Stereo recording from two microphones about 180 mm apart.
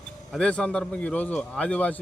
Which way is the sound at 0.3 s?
5° left (ahead or behind).